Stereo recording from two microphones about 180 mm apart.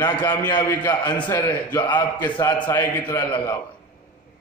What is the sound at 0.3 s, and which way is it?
A man's voice, 10° left (ahead or behind).